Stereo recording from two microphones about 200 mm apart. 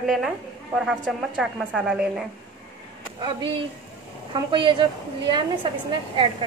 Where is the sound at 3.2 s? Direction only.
25° right (ahead or behind).